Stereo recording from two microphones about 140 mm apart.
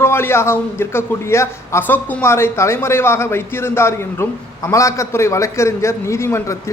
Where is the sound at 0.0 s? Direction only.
15° left (ahead or behind).